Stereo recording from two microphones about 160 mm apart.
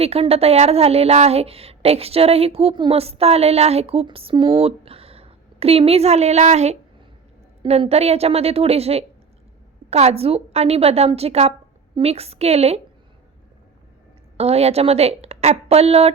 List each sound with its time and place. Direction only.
0.0 s a woman's voice: 40° right (ahead or behind)
14.3 s a woman's voice: 40° right (ahead or behind)